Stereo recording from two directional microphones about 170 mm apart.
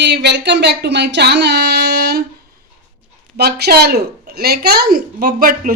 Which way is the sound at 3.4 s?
75° right (ahead or behind).